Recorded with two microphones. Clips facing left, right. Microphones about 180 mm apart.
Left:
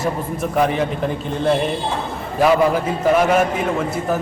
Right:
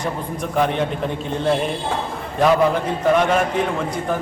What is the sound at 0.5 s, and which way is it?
A man's voice, centre (ahead or behind).